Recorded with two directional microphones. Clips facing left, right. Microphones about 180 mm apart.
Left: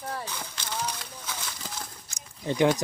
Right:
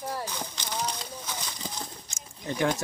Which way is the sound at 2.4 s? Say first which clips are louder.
Left 5 dB; 20° left (ahead or behind).